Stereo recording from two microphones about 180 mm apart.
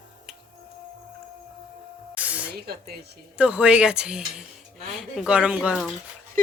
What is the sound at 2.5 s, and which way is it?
Speech, 60° right (ahead or behind).